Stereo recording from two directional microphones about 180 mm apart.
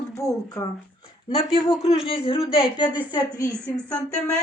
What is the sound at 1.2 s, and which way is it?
Speech, 30° left (ahead or behind).